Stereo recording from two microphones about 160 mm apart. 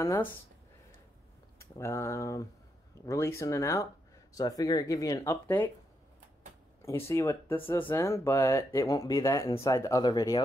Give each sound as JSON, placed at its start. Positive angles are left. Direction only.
{"t": 0.0, "sound": "speech", "side_deg": 20}
{"t": 1.6, "sound": "speech", "side_deg": 15}
{"t": 7.1, "sound": "speech", "side_deg": 20}